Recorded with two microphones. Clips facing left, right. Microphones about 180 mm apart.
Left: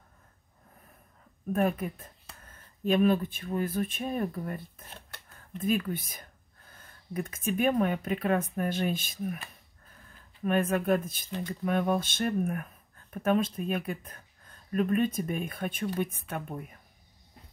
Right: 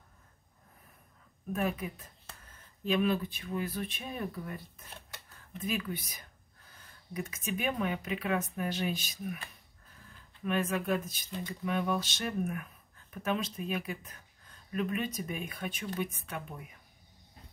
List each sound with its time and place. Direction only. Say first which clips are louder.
1.5 s speech: left 5 dB; 50° left (ahead or behind)
10.4 s speech: left 5 dB; 50° left (ahead or behind)